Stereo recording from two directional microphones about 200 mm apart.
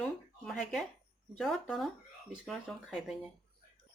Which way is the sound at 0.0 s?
Centre (ahead or behind).